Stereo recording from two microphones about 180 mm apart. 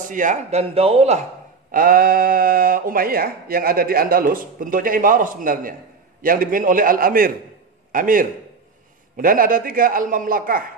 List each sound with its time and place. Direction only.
0.0 s speech: 45° right (ahead or behind)
1.7 s speech: 50° right (ahead or behind)